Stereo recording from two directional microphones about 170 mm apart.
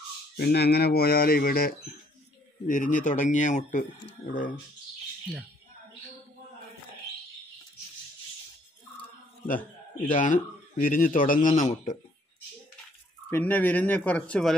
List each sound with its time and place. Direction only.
0.4 s speech: 70° left (ahead or behind); by 4.6 s 50° left (ahead or behind)
10.1 s speech: 50° left (ahead or behind)
13.3 s speech: 10° left (ahead or behind)